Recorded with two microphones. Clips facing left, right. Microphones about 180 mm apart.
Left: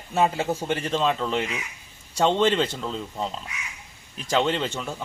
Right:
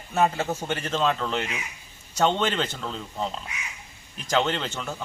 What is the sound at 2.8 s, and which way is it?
Speech, centre (ahead or behind).